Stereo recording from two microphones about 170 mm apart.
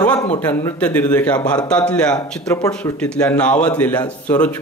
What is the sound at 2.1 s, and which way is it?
Speech, 20° left (ahead or behind).